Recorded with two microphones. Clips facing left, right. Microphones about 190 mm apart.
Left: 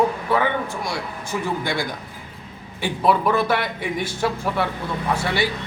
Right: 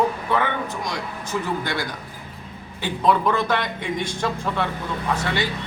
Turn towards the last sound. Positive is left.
turn(degrees=10)  # may be behind; listen again after turning